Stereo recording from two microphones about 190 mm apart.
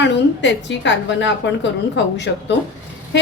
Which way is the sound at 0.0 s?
70° left (ahead or behind).